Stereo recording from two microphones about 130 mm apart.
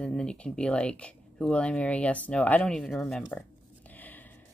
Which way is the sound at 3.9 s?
15° left (ahead or behind).